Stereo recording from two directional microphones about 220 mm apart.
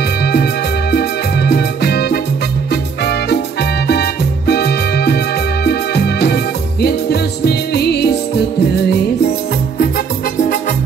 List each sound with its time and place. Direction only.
0.2 s music: 50° left (ahead or behind)